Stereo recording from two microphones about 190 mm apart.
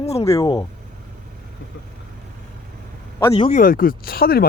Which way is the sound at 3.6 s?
50° left (ahead or behind).